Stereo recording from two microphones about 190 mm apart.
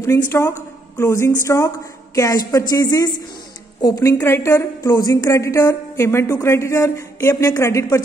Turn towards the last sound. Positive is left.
turn(degrees=15)  # may be behind; listen again after turning